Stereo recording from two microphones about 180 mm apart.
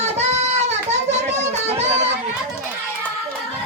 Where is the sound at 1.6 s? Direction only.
35° right (ahead or behind).